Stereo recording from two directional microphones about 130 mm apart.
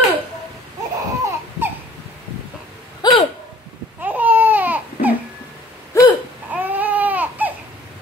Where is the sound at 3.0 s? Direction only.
30° left (ahead or behind).